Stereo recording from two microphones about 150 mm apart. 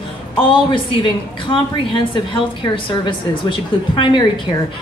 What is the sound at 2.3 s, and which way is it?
A woman's voice, 35° left (ahead or behind).